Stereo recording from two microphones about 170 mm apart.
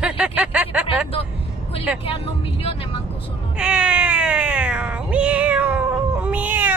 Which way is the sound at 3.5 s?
5° right (ahead or behind).